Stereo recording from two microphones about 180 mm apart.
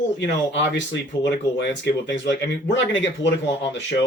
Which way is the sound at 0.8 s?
80° left.